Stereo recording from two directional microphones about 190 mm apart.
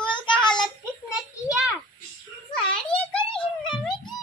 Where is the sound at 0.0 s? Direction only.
25° left (ahead or behind).